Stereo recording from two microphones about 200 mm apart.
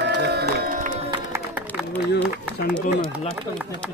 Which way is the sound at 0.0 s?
60° right (ahead or behind).